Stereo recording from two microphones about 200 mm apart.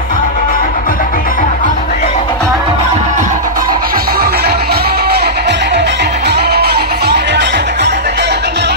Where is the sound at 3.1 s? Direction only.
40° right (ahead or behind).